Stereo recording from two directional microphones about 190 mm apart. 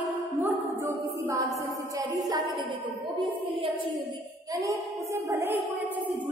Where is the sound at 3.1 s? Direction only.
25° right (ahead or behind).